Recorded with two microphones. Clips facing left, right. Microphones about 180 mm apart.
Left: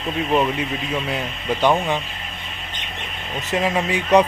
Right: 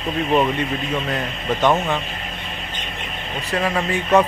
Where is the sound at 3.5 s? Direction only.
15° left (ahead or behind).